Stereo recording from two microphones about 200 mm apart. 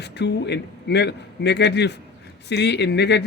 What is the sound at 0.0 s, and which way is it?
Speech, 55° left (ahead or behind).